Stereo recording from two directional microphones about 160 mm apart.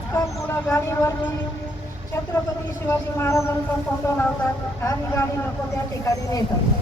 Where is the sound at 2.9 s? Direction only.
15° left (ahead or behind).